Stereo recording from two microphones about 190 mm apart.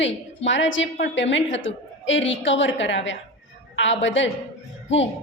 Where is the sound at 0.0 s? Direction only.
75° left (ahead or behind).